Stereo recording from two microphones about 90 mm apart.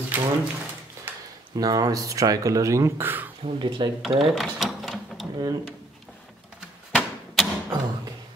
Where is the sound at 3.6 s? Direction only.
65° right (ahead or behind).